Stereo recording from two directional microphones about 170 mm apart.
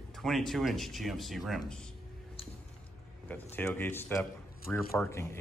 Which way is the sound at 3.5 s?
10° left (ahead or behind).